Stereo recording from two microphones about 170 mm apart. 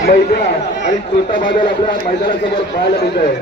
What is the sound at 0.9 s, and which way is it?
Speech, 50° left (ahead or behind).